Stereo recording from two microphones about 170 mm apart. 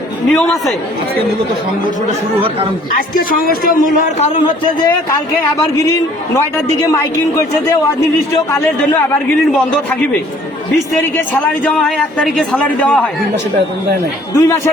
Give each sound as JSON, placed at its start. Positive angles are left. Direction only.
{"t": 0.3, "sound": "a man's voice", "side_deg": 5}
{"t": 3.2, "sound": "a man's voice", "side_deg": 60}
{"t": 4.4, "sound": "speech", "side_deg": 25}
{"t": 6.8, "sound": "speech", "side_deg": 20}
{"t": 9.6, "sound": "speech", "side_deg": 5}
{"t": 11.6, "sound": "a man's voice", "side_deg": 5}
{"t": 14.3, "sound": "speech", "side_deg": 15}